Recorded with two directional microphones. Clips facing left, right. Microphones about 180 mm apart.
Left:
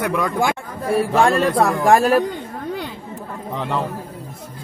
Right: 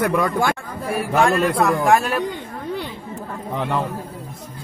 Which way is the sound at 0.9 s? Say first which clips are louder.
Left 2 dB; 30° left (ahead or behind).